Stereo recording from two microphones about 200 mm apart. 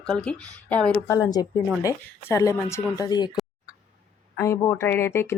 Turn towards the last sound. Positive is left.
turn(degrees=10)  # may be behind; listen again after turning